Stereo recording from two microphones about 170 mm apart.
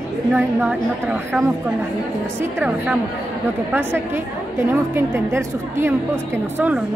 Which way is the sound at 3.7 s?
15° right (ahead or behind).